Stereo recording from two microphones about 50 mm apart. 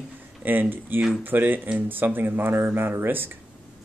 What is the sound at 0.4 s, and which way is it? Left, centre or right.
Speech, right.